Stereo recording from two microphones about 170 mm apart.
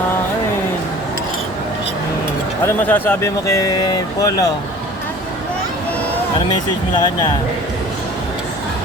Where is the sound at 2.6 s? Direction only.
15° left (ahead or behind).